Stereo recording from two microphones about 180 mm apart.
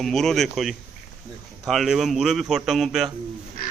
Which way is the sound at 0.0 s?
Centre (ahead or behind).